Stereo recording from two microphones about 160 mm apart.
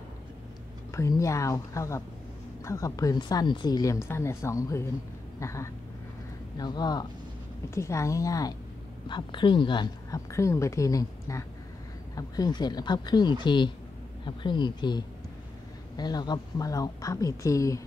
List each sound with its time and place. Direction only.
0.9 s speech: 20° left (ahead or behind)